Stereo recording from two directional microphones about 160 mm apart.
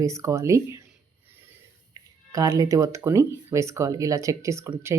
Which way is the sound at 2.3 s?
20° right (ahead or behind).